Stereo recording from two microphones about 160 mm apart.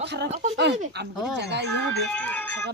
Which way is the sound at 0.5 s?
90° right.